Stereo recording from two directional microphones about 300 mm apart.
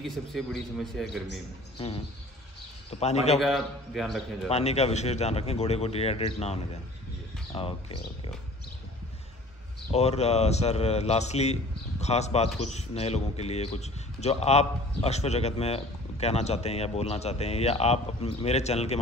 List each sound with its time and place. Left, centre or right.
0.0 s a man's voice: centre
2.9 s a man's voice: left
3.3 s a man's voice: centre
4.5 s a man's voice: left
9.8 s a man's voice: left